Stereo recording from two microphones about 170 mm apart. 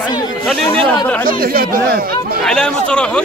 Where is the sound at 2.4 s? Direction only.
5° left (ahead or behind).